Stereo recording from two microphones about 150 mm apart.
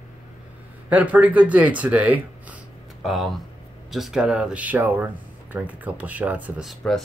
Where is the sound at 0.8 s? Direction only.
10° right (ahead or behind).